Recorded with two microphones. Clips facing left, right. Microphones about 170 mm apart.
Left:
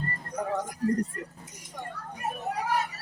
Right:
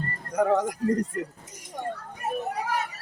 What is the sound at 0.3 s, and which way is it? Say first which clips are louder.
Speech: right 9 dB; 90° right.